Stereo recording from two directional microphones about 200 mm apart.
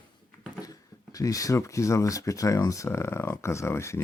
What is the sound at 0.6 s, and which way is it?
Speech, 20° left (ahead or behind).